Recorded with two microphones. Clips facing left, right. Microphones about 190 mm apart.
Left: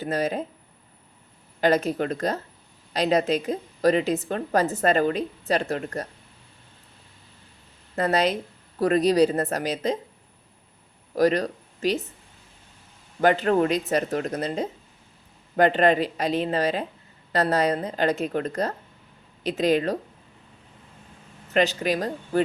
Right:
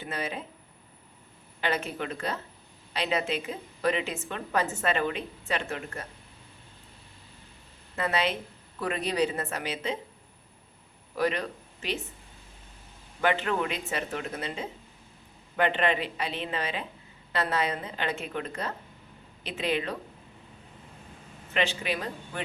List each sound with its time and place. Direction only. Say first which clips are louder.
0.0 s a woman's voice: left 9 dB; 40° left (ahead or behind)
1.6 s a woman's voice: left 9 dB; 40° left (ahead or behind)
7.9 s a woman's voice: left 6 dB; 40° left (ahead or behind)
11.1 s speech: left 7 dB; 40° left (ahead or behind)
13.2 s a woman's voice: left 7 dB; 40° left (ahead or behind)
21.5 s a woman's voice: left 7 dB; 40° left (ahead or behind)